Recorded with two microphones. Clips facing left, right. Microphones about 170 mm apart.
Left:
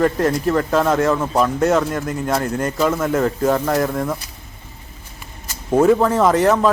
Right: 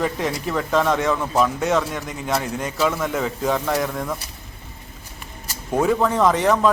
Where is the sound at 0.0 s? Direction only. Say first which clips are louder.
Left 7 dB; centre (ahead or behind).